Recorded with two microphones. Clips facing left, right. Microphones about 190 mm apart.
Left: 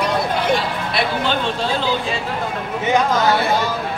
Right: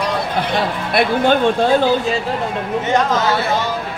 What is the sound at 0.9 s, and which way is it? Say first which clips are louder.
Speech: right 7 dB; 50° right (ahead or behind).